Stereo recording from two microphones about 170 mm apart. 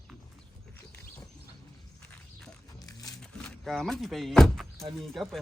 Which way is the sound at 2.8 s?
20° left (ahead or behind).